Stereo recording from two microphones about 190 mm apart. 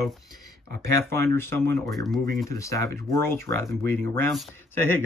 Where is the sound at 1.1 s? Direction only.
15° left (ahead or behind).